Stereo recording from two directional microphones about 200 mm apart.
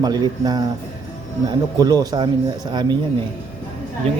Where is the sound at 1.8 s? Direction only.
20° right (ahead or behind).